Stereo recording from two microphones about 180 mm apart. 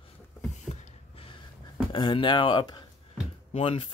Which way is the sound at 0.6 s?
40° left (ahead or behind).